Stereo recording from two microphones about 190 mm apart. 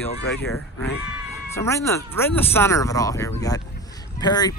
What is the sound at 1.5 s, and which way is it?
Music, 15° left (ahead or behind).